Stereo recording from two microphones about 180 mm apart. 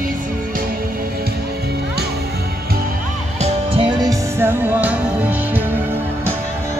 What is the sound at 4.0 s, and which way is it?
Music, 15° right (ahead or behind).